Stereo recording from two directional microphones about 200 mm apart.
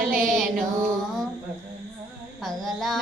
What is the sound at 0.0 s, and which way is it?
Music, 45° right (ahead or behind).